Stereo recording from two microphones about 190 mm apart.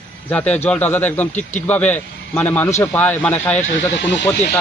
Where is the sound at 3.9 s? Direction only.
70° left (ahead or behind).